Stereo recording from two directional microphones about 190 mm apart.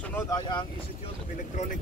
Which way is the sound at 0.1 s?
20° left (ahead or behind).